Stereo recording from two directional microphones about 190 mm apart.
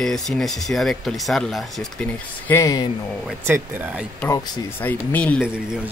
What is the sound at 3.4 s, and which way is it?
Speech, 10° right (ahead or behind).